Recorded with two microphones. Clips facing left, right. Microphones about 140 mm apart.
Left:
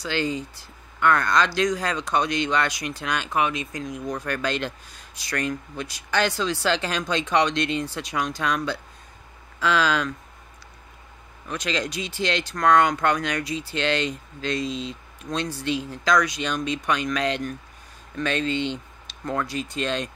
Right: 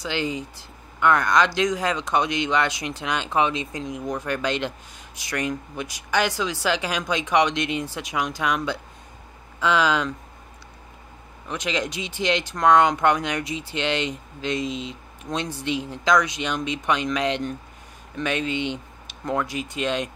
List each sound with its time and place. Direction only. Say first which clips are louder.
0.0 s speech: left 1 dB; 15° right (ahead or behind)
11.4 s speech: right 1 dB; 20° right (ahead or behind)